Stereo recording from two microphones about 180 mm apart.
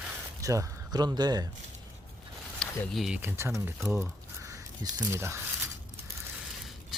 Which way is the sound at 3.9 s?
15° right (ahead or behind).